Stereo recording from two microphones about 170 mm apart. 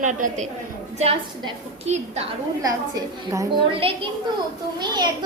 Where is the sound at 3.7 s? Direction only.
35° right (ahead or behind).